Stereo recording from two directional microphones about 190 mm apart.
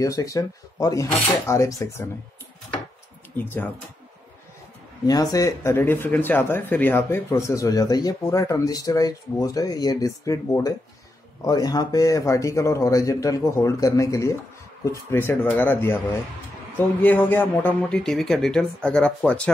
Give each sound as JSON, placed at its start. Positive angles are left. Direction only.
{"t": 0.0, "sound": "speech", "side_deg": 20}
{"t": 3.3, "sound": "speech", "side_deg": 10}
{"t": 5.0, "sound": "a man's voice", "side_deg": 20}